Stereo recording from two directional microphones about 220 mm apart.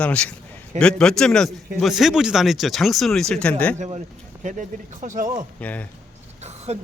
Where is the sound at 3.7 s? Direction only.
35° right (ahead or behind).